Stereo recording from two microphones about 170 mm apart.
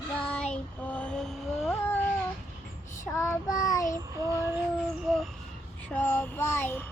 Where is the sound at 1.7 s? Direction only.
15° left (ahead or behind).